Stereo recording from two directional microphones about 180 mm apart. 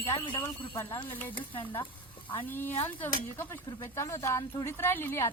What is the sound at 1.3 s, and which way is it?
Stir, 25° left (ahead or behind).